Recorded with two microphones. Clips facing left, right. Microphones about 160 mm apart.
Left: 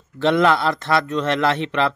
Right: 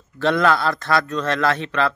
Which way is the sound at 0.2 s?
20° left (ahead or behind).